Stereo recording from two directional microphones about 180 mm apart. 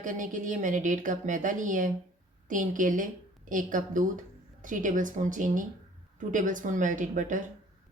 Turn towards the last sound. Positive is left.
turn(degrees=-45)  # may be behind; listen again after turning